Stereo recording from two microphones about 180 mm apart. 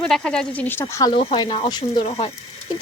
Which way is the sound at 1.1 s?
30° left (ahead or behind).